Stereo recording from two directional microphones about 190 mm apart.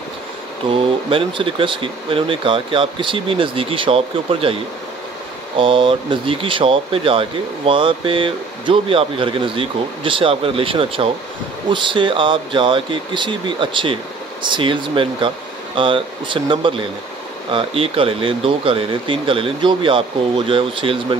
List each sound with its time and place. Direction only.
0.7 s speech: 30° right (ahead or behind)
5.6 s speech: 25° right (ahead or behind)